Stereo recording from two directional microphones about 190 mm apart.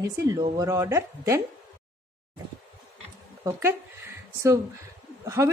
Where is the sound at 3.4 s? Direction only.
10° right (ahead or behind).